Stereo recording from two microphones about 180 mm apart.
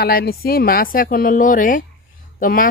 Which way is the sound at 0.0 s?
60° left (ahead or behind).